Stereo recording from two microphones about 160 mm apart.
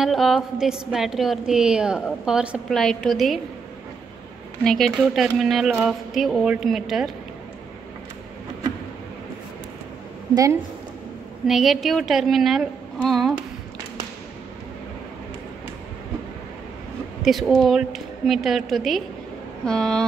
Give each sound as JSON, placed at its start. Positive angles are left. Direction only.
{"t": 0.0, "sound": "a woman's voice", "side_deg": 0}
{"t": 4.6, "sound": "a woman's voice", "side_deg": 5}
{"t": 10.3, "sound": "a woman's voice", "side_deg": -20}
{"t": 11.4, "sound": "a woman's voice", "side_deg": 0}
{"t": 17.2, "sound": "a woman's voice", "side_deg": 0}